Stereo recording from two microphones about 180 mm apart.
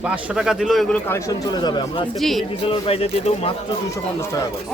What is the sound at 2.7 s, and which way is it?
Speech, 35° left (ahead or behind).